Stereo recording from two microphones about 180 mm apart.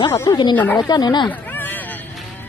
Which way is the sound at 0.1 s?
15° left (ahead or behind).